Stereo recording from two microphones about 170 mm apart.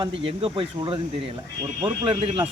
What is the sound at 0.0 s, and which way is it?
Speech, 30° right (ahead or behind).